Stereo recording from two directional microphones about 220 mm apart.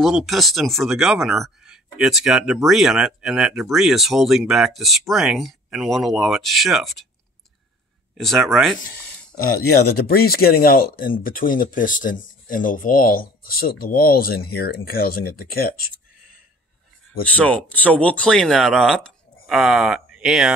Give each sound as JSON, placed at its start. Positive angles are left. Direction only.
{"t": 0.0, "sound": "speech", "side_deg": 0}
{"t": 8.2, "sound": "speech", "side_deg": 0}
{"t": 9.8, "sound": "speech", "side_deg": 45}
{"t": 17.3, "sound": "speech", "side_deg": 5}